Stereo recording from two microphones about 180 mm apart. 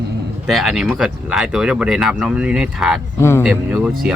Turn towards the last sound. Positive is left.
turn(degrees=-5)  # may be behind; listen again after turning